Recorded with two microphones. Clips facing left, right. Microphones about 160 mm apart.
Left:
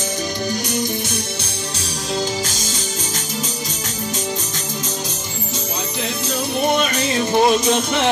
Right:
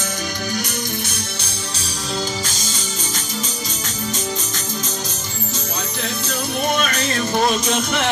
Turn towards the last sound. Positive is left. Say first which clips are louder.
# left 3 dB
turn(degrees=10)  # may be behind; listen again after turning